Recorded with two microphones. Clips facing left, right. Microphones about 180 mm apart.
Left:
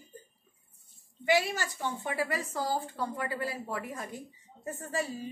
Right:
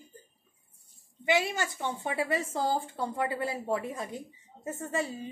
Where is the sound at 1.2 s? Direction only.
20° right (ahead or behind).